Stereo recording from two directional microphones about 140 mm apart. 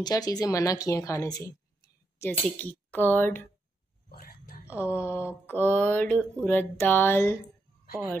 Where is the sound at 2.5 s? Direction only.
10° left (ahead or behind).